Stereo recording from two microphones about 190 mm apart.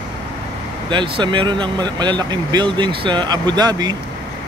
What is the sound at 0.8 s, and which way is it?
Speech, 25° right (ahead or behind).